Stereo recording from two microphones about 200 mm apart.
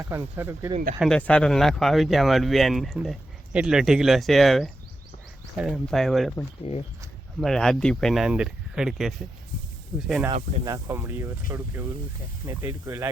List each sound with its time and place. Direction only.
0.0 s speech: 15° right (ahead or behind)
0.9 s speech: centre (ahead or behind)
6.6 s speech: 30° left (ahead or behind)
7.3 s speech: centre (ahead or behind)
10.7 s speech: 15° right (ahead or behind)